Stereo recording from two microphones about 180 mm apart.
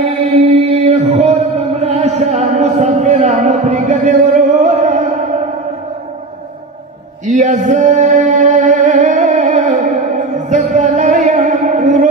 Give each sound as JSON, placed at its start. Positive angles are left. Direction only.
{"t": 0.2, "sound": "music", "side_deg": -40}
{"t": 7.3, "sound": "singing", "side_deg": -45}